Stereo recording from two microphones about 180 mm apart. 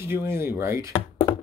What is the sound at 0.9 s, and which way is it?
Chopping, 30° left (ahead or behind).